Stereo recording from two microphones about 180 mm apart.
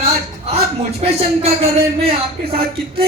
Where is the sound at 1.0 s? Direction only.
35° right (ahead or behind).